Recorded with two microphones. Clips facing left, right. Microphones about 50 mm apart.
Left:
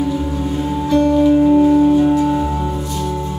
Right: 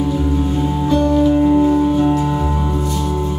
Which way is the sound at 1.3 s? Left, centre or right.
Centre.